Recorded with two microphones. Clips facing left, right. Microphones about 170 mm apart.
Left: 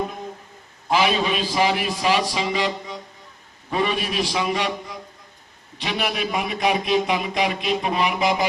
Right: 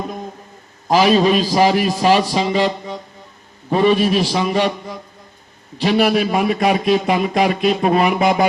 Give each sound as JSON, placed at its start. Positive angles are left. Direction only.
{"t": 0.9, "sound": "a man's voice", "side_deg": -40}
{"t": 5.7, "sound": "a man's voice", "side_deg": -35}